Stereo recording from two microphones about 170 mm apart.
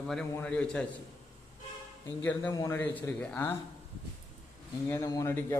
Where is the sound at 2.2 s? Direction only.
15° left (ahead or behind).